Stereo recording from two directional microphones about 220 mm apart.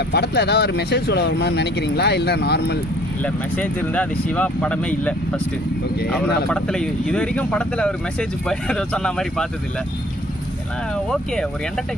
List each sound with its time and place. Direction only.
0.1 s speech: 50° left (ahead or behind)
3.2 s speech: 5° left (ahead or behind)
6.5 s speech: 5° left (ahead or behind)
11.1 s speech: centre (ahead or behind)